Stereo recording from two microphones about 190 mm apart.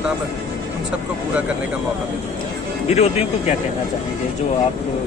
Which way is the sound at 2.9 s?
35° left (ahead or behind).